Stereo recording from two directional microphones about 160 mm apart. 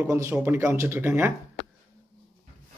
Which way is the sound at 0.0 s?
15° right (ahead or behind).